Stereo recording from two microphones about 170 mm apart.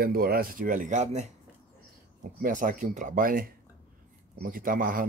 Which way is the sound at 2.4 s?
50° right (ahead or behind).